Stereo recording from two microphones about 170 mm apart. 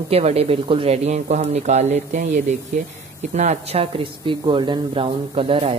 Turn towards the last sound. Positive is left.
turn(degrees=-35)  # may be behind; listen again after turning